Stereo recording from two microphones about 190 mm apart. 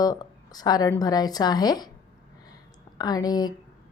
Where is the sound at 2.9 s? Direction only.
20° left (ahead or behind).